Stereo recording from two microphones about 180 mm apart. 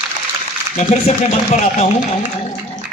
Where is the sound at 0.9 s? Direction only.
40° left (ahead or behind).